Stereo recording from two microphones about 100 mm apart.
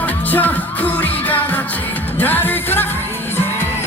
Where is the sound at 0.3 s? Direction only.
15° left (ahead or behind).